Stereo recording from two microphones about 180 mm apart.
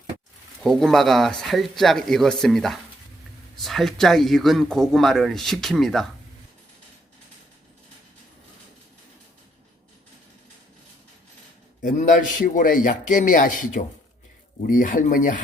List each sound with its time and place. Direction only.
0.6 s speech: 5° left (ahead or behind)
11.8 s a man's voice: 45° left (ahead or behind)